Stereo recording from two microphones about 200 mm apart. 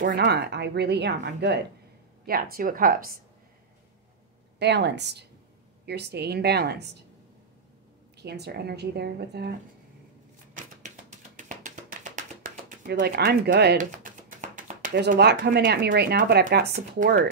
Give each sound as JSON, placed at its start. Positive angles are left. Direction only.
{"t": 0.0, "sound": "speech", "side_deg": -50}
{"t": 2.5, "sound": "speech", "side_deg": -45}
{"t": 4.6, "sound": "speech", "side_deg": -55}
{"t": 8.2, "sound": "speech", "side_deg": -55}
{"t": 10.5, "sound": "music", "side_deg": -40}
{"t": 12.9, "sound": "speech", "side_deg": -45}
{"t": 13.7, "sound": "a sound", "side_deg": -40}
{"t": 15.0, "sound": "speech", "side_deg": -55}